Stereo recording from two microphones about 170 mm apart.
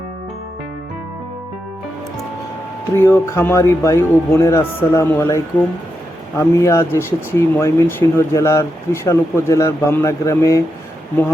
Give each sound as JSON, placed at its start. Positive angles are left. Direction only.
{"t": 2.9, "sound": "speech", "side_deg": 15}